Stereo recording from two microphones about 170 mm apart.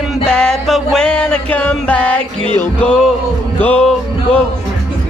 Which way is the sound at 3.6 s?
5° left (ahead or behind).